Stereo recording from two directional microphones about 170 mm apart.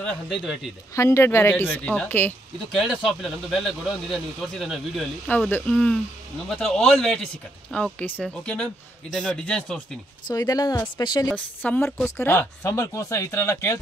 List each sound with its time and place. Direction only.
0.0 s speech: centre (ahead or behind)
0.9 s speech: 15° left (ahead or behind)
2.8 s speech: centre (ahead or behind)
10.2 s speech: 20° left (ahead or behind)
11.2 s speech: 10° left (ahead or behind)